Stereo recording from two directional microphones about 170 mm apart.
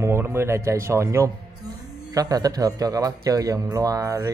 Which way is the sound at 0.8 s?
15° right (ahead or behind).